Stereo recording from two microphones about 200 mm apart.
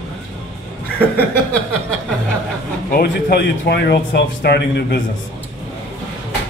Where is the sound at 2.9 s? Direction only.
50° left (ahead or behind).